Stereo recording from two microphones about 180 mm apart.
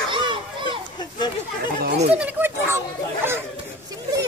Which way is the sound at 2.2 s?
10° right (ahead or behind).